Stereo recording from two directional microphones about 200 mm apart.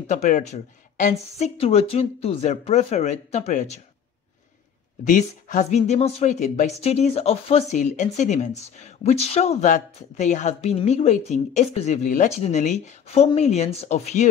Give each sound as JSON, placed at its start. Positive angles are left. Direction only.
{"t": 0.0, "sound": "speech", "side_deg": 35}
{"t": 5.0, "sound": "speech", "side_deg": 40}